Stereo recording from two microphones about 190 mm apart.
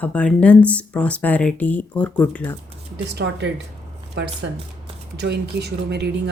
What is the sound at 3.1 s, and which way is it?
Speech, 65° right (ahead or behind).